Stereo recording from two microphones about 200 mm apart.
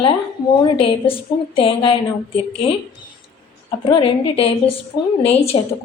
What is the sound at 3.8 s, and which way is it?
A woman's voice, 25° left (ahead or behind).